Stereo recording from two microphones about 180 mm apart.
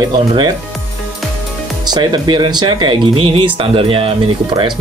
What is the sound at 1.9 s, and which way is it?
Speech, 25° right (ahead or behind).